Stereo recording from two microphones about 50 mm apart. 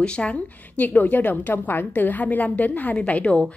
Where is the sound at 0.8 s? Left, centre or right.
Left.